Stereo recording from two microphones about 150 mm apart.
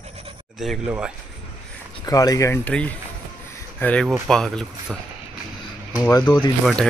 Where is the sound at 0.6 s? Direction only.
Centre (ahead or behind).